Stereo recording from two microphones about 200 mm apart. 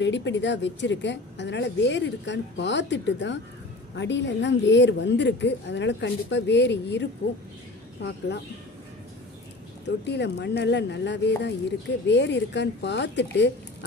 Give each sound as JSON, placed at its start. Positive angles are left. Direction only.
{"t": 0.0, "sound": "a woman's voice", "side_deg": 65}
{"t": 9.8, "sound": "a woman's voice", "side_deg": 60}